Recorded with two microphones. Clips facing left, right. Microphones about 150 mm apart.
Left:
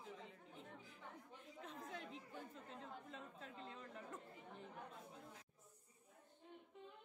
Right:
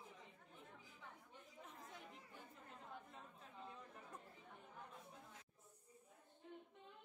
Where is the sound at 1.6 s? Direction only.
85° left.